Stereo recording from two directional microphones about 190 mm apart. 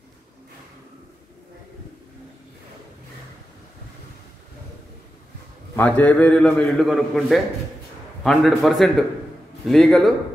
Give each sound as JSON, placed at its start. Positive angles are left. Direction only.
{"t": 5.8, "sound": "a man's voice", "side_deg": 10}